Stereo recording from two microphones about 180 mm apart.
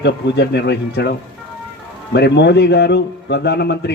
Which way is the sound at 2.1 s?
70° left (ahead or behind).